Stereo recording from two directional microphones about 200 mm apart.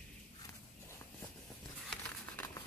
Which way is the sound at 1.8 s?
10° left (ahead or behind).